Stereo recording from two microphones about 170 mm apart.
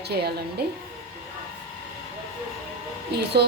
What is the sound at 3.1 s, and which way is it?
Speech, 70° right (ahead or behind).